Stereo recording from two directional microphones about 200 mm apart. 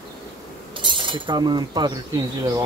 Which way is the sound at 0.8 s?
25° right (ahead or behind).